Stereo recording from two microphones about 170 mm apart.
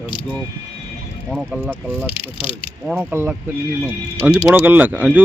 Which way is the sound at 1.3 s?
Centre (ahead or behind).